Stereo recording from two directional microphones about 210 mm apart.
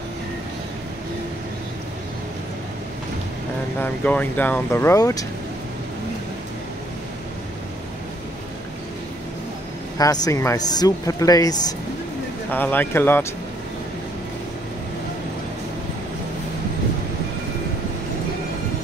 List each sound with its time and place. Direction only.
3.8 s speech: 5° left (ahead or behind)
9.9 s speech: 15° left (ahead or behind)